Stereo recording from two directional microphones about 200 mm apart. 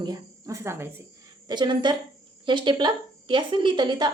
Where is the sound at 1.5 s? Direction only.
20° right (ahead or behind).